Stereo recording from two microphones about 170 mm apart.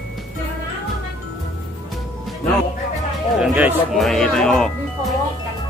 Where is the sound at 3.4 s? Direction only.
5° right (ahead or behind).